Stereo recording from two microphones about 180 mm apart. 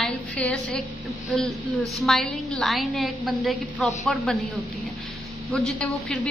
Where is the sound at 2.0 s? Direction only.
Centre (ahead or behind).